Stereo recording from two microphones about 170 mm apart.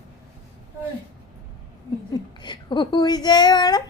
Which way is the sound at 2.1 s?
25° left (ahead or behind).